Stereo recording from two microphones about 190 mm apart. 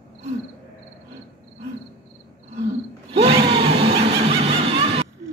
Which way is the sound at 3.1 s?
30° right (ahead or behind).